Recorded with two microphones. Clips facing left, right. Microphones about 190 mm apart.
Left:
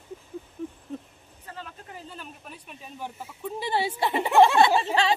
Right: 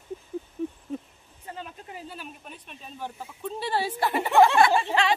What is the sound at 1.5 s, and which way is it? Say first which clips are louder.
Vehicle: right 2 dB; 20° right (ahead or behind).